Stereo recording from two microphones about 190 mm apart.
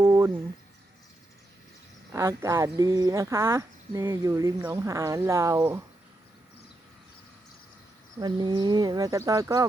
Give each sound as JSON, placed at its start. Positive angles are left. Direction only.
{"t": 0.0, "sound": "a sound", "side_deg": -15}
{"t": 2.1, "sound": "speech", "side_deg": -15}
{"t": 8.2, "sound": "speech", "side_deg": -20}